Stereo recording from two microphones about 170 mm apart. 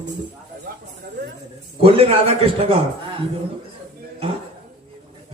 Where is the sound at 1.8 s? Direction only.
35° right (ahead or behind).